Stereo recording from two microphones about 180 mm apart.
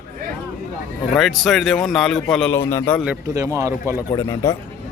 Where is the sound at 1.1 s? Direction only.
Centre (ahead or behind).